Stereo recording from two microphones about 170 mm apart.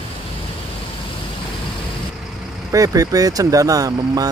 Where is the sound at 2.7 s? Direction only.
20° right (ahead or behind).